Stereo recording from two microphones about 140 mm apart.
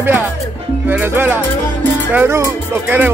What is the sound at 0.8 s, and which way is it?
Music, 15° right (ahead or behind).